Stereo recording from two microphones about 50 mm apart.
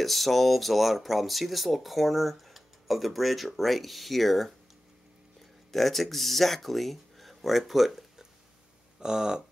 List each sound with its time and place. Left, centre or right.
0.0 s speech: centre
5.7 s speech: centre